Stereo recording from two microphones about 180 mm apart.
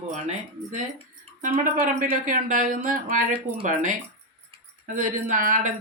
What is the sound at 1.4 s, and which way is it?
Speech, 45° right (ahead or behind).